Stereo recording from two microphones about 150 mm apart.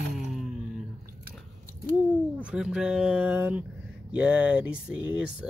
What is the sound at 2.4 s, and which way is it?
Speech, 5° right (ahead or behind).